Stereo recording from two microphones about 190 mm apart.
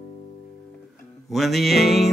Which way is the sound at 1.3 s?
Centre (ahead or behind).